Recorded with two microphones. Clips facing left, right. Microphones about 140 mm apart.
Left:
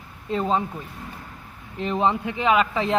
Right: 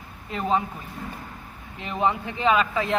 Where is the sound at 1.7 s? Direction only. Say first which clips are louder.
Left 3 dB; 30° left (ahead or behind).